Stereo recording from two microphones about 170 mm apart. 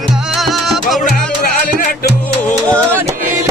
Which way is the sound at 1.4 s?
55° left (ahead or behind).